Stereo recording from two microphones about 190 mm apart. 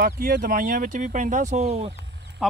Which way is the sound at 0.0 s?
50° right (ahead or behind).